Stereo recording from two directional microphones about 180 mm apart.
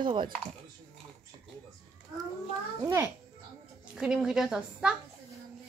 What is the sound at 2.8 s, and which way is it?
A child's voice, 15° right (ahead or behind).